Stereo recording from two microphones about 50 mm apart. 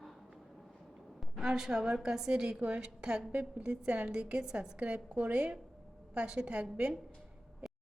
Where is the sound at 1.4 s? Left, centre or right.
Centre.